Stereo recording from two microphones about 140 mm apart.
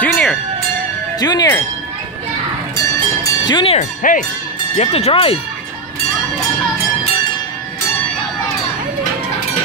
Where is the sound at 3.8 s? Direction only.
60° left (ahead or behind).